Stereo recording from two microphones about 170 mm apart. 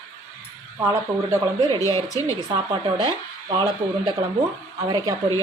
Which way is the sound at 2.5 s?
25° right (ahead or behind).